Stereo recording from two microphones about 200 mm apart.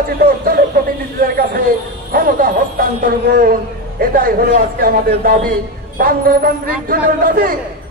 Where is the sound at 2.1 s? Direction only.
45° right (ahead or behind).